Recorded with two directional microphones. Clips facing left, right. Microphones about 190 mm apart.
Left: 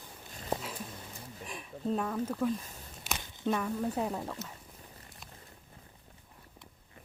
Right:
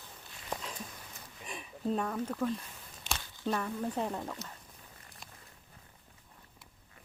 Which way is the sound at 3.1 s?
20° left (ahead or behind).